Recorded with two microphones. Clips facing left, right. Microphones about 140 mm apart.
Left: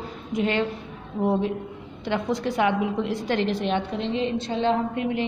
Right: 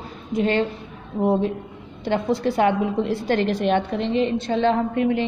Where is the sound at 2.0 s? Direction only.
35° right (ahead or behind); by 4.7 s 60° right (ahead or behind).